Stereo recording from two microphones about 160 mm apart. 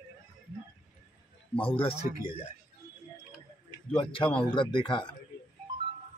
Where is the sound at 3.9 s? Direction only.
30° left (ahead or behind).